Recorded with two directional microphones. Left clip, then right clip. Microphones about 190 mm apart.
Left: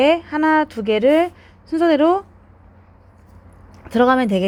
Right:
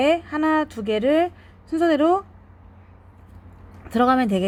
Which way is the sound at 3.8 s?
15° left (ahead or behind).